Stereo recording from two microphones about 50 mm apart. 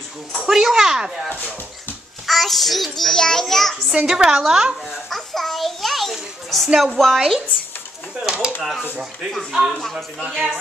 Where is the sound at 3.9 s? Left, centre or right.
Centre.